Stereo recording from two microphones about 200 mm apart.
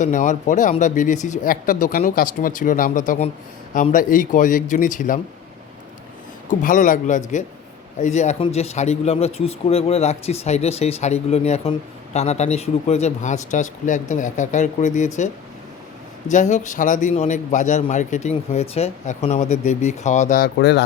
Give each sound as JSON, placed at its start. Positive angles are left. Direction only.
{"t": 0.0, "sound": "a man's voice", "side_deg": 40}
{"t": 6.5, "sound": "a man's voice", "side_deg": 40}
{"t": 16.3, "sound": "a man's voice", "side_deg": 40}